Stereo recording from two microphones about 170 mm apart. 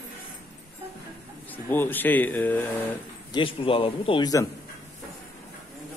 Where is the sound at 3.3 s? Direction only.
30° left (ahead or behind).